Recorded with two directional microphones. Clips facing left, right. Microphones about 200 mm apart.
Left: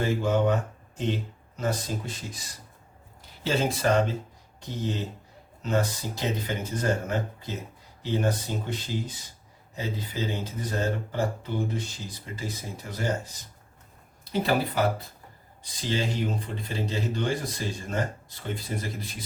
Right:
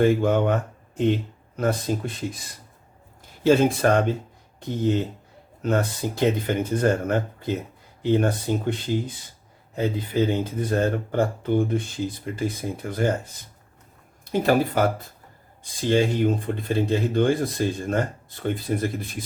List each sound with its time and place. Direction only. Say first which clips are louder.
0.0 s speech: right 5 dB; 55° right (ahead or behind)
1.5 s speech: right 6 dB; 55° right (ahead or behind)
3.4 s speech: right 7 dB; 50° right (ahead or behind)
5.6 s speech: right 4 dB; 55° right (ahead or behind)
14.3 s speech: right 5 dB; 50° right (ahead or behind)